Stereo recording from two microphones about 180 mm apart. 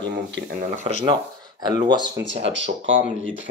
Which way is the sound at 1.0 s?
25° right (ahead or behind).